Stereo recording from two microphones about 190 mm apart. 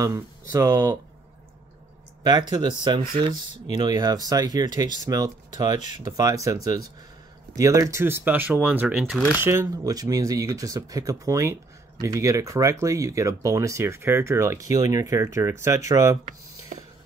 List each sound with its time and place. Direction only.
0.0 s speech: 15° right (ahead or behind)
2.8 s speech: 25° right (ahead or behind)